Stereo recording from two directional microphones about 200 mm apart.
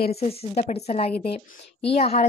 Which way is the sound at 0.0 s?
30° left (ahead or behind).